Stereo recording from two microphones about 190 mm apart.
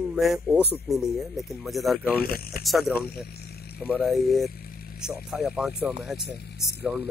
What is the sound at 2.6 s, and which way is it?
Speech, centre (ahead or behind).